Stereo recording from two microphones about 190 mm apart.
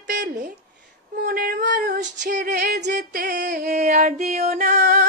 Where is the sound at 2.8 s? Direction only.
45° right (ahead or behind); by 3.5 s 60° right (ahead or behind).